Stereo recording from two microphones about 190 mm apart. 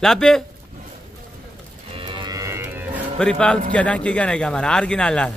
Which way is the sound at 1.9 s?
25° right (ahead or behind).